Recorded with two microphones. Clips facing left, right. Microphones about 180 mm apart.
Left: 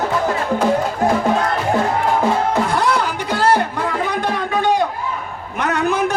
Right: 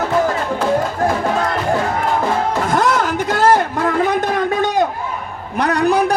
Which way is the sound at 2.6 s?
45° right (ahead or behind).